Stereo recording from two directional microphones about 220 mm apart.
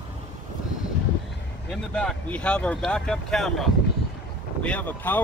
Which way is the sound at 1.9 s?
5° left (ahead or behind).